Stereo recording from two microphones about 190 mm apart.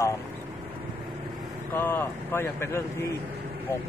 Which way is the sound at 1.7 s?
10° left (ahead or behind).